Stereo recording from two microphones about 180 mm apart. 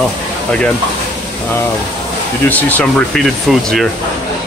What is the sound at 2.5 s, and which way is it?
Speech, 10° left (ahead or behind).